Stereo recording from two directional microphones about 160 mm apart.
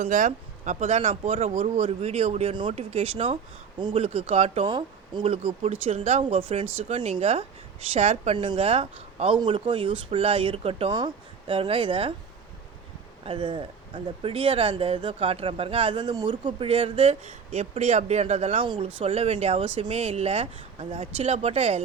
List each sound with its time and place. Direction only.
0.0 s a woman's voice: 55° right (ahead or behind); by 12.1 s 35° right (ahead or behind)
13.2 s speech: 35° right (ahead or behind)